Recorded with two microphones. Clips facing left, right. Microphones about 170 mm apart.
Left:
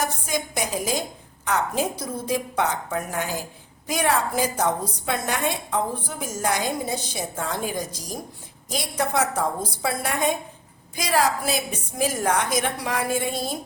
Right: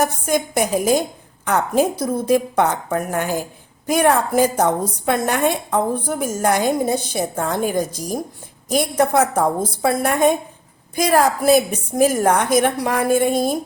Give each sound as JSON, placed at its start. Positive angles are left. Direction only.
{"t": 0.0, "sound": "a woman's voice", "side_deg": -55}